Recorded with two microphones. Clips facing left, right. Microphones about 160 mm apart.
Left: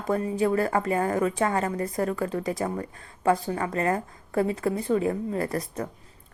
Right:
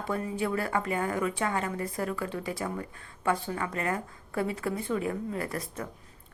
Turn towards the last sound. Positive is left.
turn(degrees=35)  # may be behind; listen again after turning